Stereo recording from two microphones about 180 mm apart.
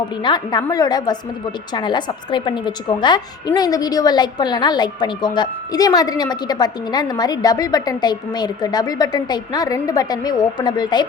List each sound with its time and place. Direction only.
0.2 s a woman's voice: 25° left (ahead or behind)